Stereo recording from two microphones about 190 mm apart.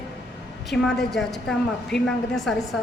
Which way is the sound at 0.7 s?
5° left (ahead or behind).